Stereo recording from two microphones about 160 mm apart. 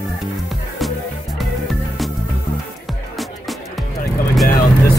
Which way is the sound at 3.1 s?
Centre (ahead or behind).